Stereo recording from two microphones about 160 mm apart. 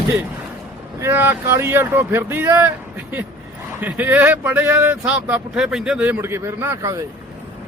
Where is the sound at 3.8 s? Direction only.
10° right (ahead or behind).